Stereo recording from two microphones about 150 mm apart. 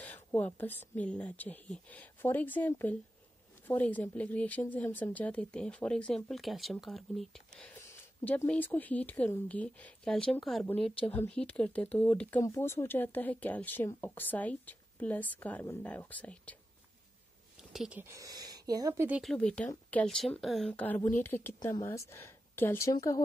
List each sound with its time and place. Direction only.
0.0 s a sound: 10° left (ahead or behind)
0.6 s speech: 10° left (ahead or behind)
7.7 s speech: 15° left (ahead or behind)
17.7 s speech: 5° right (ahead or behind)
18.0 s speech: 20° right (ahead or behind)
19.2 s a woman's voice: 5° left (ahead or behind)